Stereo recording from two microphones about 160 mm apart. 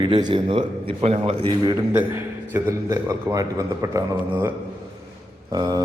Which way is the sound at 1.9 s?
15° right (ahead or behind).